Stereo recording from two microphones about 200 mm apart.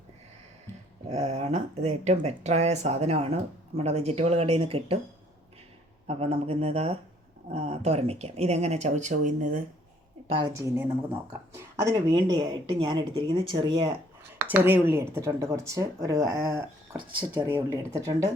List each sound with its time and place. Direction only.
1.1 s speech: 35° right (ahead or behind)
6.1 s speech: 30° right (ahead or behind)
10.2 s speech: 20° right (ahead or behind)
14.5 s speech: 10° right (ahead or behind)